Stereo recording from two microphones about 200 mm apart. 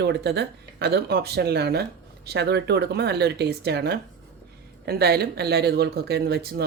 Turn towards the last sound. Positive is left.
turn(degrees=-55)  # may be behind; listen again after turning